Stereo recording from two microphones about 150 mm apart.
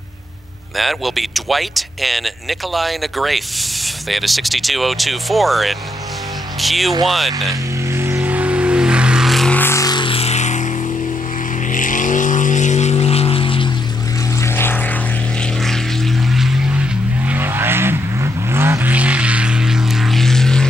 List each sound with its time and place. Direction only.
0.7 s speech: centre (ahead or behind)
7.9 s vehicle: 15° right (ahead or behind); by 9.6 s centre (ahead or behind)
9.6 s vehicle: 20° left (ahead or behind); by 10.7 s 50° left (ahead or behind)
11.7 s vehicle: 60° left (ahead or behind); by 13.7 s 35° left (ahead or behind)
14.4 s vehicle: 15° left (ahead or behind)
15.6 s vehicle: centre (ahead or behind)
17.2 s vehicle: 15° right (ahead or behind); by 20.6 s 5° left (ahead or behind)